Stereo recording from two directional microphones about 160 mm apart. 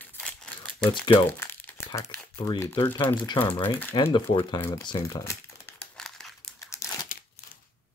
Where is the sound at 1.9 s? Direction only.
25° left (ahead or behind).